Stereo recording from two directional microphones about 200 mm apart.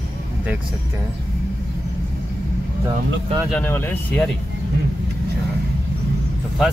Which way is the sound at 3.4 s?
5° left (ahead or behind).